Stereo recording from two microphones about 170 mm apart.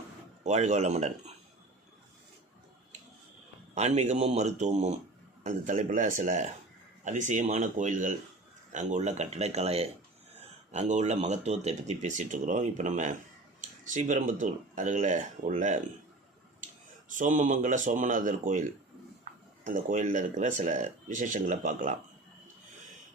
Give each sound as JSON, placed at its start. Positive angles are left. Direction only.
{"t": 0.4, "sound": "speech", "side_deg": -40}
{"t": 3.8, "sound": "speech", "side_deg": -40}
{"t": 17.1, "sound": "speech", "side_deg": -50}